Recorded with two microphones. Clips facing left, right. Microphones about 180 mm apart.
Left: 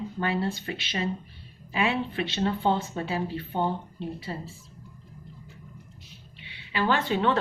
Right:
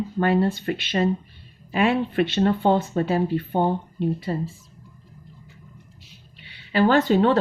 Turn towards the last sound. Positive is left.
turn(degrees=-40)  # may be behind; listen again after turning